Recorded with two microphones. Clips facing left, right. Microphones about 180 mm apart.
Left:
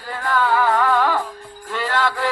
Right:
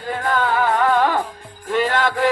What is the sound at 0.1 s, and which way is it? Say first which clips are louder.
Music: even; 20° right (ahead or behind).